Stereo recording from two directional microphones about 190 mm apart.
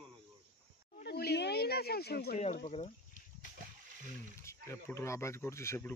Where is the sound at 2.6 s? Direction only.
30° left (ahead or behind).